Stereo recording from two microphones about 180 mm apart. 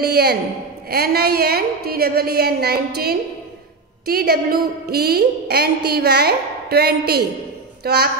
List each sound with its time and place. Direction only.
0.0 s a woman's voice: 60° right (ahead or behind)